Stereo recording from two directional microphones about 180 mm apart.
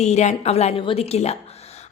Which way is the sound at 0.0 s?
40° left (ahead or behind).